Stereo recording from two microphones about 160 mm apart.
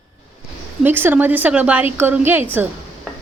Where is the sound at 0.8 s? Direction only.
15° right (ahead or behind).